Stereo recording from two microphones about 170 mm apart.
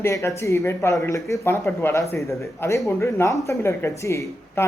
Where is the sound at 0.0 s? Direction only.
15° left (ahead or behind).